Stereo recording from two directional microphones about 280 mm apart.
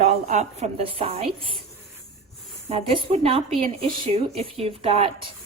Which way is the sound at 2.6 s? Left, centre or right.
Right.